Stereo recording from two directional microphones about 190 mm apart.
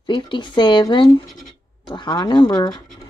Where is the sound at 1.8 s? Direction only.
20° left (ahead or behind).